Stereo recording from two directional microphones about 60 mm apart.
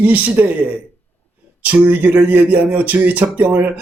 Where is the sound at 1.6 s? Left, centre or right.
Right.